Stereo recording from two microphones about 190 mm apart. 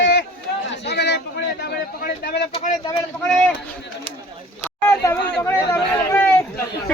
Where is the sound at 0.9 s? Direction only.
60° left (ahead or behind).